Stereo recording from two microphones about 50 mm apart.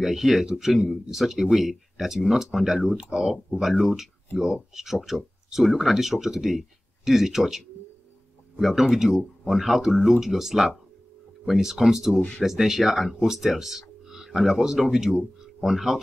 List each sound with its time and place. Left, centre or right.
0.0 s speech: centre